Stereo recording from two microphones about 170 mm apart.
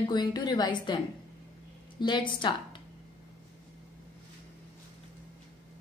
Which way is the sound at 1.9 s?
30° left (ahead or behind).